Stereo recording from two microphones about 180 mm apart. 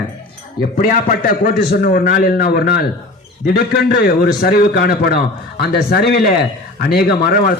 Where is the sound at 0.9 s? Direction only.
50° left (ahead or behind).